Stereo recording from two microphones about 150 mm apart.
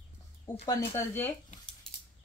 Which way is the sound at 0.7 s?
15° left (ahead or behind).